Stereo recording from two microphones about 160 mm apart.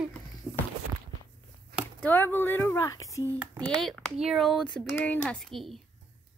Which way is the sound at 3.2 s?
15° right (ahead or behind).